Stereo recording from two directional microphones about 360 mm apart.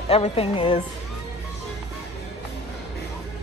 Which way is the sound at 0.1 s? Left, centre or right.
Centre.